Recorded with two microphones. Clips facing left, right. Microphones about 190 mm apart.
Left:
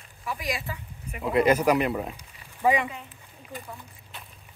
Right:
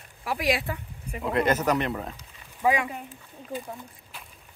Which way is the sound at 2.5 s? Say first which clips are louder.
Left 1 dB; centre (ahead or behind).